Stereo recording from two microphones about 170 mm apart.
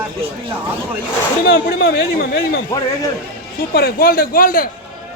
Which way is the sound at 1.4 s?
65° left (ahead or behind).